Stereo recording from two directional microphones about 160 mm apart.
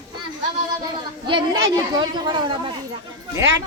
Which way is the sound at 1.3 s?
30° right (ahead or behind).